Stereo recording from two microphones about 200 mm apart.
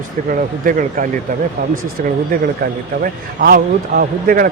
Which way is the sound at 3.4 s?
45° right (ahead or behind).